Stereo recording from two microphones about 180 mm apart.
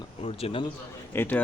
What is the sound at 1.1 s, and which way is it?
Speech, 10° left (ahead or behind).